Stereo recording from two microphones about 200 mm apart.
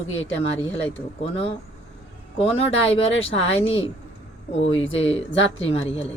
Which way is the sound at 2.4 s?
30° left (ahead or behind).